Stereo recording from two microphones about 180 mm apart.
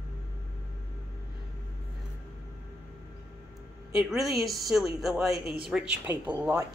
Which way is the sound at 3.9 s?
Centre (ahead or behind).